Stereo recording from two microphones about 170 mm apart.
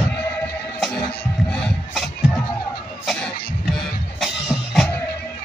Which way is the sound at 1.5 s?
5° left (ahead or behind).